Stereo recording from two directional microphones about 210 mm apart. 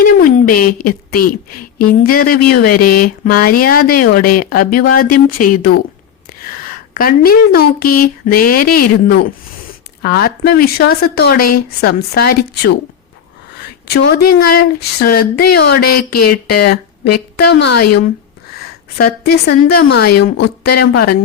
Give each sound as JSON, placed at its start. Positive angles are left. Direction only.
{"t": 0.3, "sound": "a woman's voice", "side_deg": 40}